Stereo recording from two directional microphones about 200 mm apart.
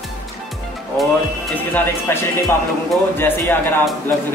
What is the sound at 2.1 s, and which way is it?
A man's voice, 10° left (ahead or behind).